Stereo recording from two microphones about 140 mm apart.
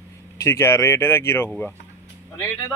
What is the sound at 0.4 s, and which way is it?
Speech, 20° left (ahead or behind).